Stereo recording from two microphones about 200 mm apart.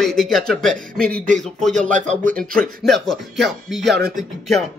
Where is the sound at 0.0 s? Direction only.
Centre (ahead or behind).